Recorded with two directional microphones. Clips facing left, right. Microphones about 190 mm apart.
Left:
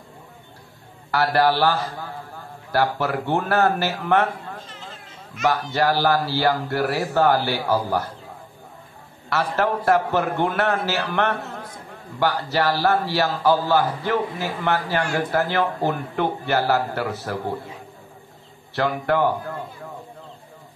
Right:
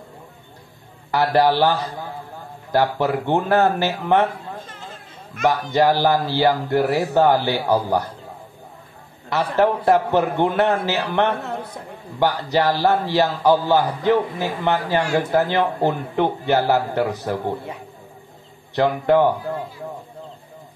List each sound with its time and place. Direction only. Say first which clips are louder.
1.1 s a man's voice: right 2 dB; 20° right (ahead or behind)
5.5 s a man's voice: right 3 dB; 15° right (ahead or behind)
9.3 s a man's voice: right 4 dB; 20° right (ahead or behind)
18.8 s a man's voice: right 5 dB; 20° right (ahead or behind)